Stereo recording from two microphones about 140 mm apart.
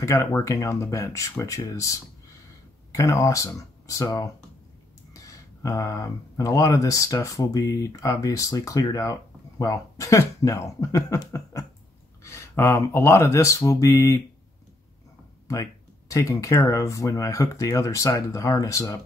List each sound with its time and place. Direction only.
0.0 s speech: 20° left (ahead or behind)
15.4 s speech: 25° left (ahead or behind)